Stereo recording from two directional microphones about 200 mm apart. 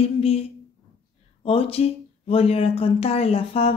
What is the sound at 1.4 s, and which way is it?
A woman's voice, 30° left (ahead or behind).